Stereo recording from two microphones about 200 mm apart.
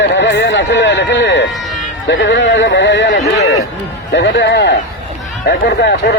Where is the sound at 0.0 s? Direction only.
60° left (ahead or behind).